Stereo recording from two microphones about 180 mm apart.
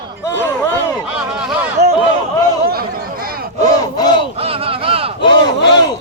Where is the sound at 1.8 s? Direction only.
65° right (ahead or behind).